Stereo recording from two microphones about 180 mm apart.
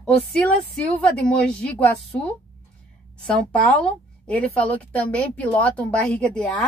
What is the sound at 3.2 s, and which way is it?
A woman's voice, 5° left (ahead or behind).